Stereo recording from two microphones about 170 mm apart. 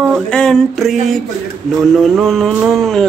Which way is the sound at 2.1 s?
Centre (ahead or behind).